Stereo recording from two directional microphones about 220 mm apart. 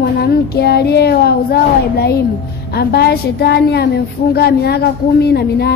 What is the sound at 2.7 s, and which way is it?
Child singing, 45° left (ahead or behind).